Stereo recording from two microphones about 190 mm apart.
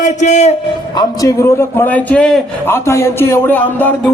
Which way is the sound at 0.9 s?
15° left (ahead or behind).